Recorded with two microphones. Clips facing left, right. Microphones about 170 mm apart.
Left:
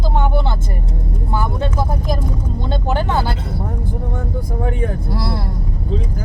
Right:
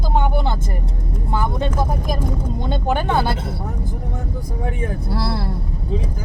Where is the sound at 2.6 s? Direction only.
20° right (ahead or behind).